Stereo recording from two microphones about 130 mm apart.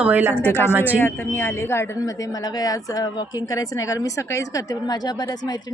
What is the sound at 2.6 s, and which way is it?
Speech, 30° left (ahead or behind).